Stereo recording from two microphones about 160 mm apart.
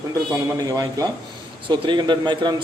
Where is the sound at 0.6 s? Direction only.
20° right (ahead or behind).